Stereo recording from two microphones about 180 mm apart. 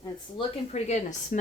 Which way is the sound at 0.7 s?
40° left (ahead or behind).